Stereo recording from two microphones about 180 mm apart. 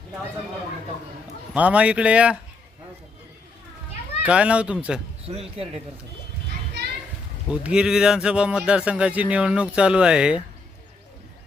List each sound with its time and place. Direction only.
1.5 s speech: 5° right (ahead or behind)
4.2 s speech: 5° right (ahead or behind)
5.2 s speech: 35° right (ahead or behind)
7.4 s speech: 5° right (ahead or behind)